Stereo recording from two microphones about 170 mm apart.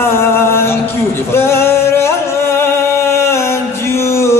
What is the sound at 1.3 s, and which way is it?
Music, 15° left (ahead or behind).